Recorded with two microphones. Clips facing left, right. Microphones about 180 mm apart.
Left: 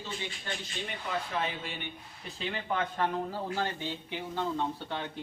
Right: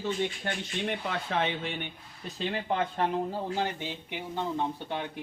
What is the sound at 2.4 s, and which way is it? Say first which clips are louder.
Speech: right 3 dB; 30° right (ahead or behind).